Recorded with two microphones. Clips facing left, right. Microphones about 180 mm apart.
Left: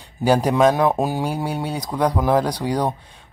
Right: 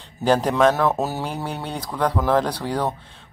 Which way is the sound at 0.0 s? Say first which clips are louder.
Left 1 dB; 10° left (ahead or behind).